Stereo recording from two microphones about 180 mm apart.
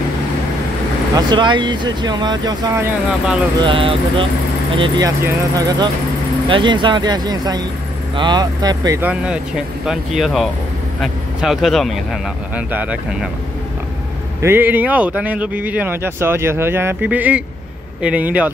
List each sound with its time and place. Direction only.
1.1 s speech: 25° right (ahead or behind)
9.0 s speech: 5° right (ahead or behind)
14.4 s speech: 10° right (ahead or behind)